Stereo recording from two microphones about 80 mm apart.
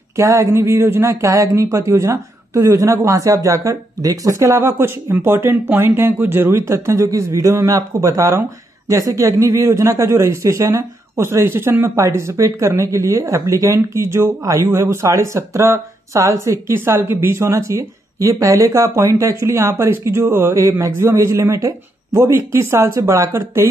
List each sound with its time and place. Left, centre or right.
0.1 s speech: right
1.2 s a woman's voice: right
22.5 s speech: right